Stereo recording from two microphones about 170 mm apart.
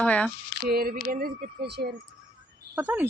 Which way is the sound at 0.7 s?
65° right (ahead or behind).